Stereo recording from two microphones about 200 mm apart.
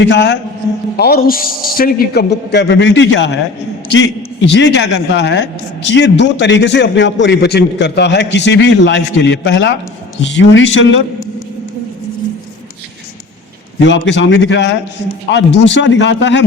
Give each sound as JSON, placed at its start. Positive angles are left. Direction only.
{"t": 0.0, "sound": "a man's voice", "side_deg": 60}
{"t": 0.9, "sound": "a man's voice", "side_deg": 50}
{"t": 13.7, "sound": "a man's voice", "side_deg": 65}